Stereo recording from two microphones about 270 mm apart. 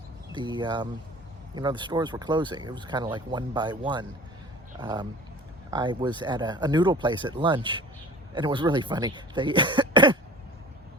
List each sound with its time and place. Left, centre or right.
0.3 s speech: centre
9.9 s cough: centre